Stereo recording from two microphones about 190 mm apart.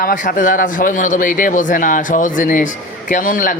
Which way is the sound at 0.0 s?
50° left (ahead or behind).